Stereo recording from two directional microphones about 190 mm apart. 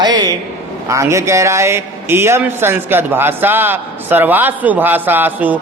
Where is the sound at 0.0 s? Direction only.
20° right (ahead or behind).